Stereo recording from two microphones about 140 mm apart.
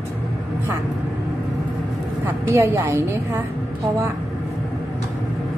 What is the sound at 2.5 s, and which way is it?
Speech, 15° right (ahead or behind).